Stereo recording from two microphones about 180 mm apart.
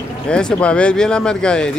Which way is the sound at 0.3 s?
5° left (ahead or behind).